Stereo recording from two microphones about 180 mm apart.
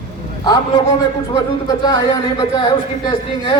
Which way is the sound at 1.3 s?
25° left (ahead or behind).